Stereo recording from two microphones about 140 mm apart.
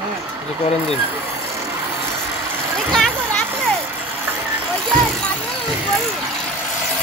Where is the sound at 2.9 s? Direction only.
5° left (ahead or behind).